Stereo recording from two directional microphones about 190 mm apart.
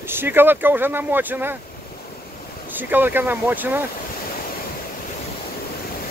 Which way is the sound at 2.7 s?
10° right (ahead or behind).